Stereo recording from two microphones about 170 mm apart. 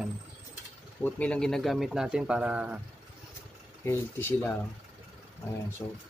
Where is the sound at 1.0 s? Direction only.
5° left (ahead or behind).